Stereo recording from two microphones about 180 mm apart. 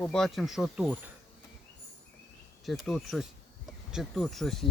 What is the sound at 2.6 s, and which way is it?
Speech, centre (ahead or behind).